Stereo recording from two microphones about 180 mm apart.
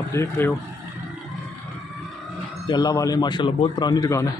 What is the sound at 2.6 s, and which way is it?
Speech, 20° left (ahead or behind).